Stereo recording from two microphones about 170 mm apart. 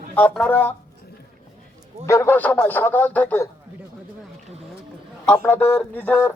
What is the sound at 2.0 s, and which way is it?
Speech, 15° left (ahead or behind).